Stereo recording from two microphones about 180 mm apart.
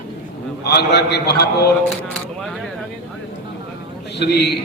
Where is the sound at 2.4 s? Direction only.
Centre (ahead or behind).